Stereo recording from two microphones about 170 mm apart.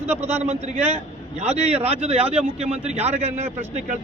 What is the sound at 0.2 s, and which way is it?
A man's voice, 40° right (ahead or behind).